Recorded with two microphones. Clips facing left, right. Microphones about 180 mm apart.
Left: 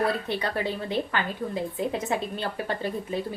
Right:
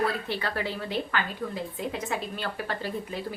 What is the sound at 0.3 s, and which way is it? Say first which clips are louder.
Speech: left 3 dB; 20° left (ahead or behind).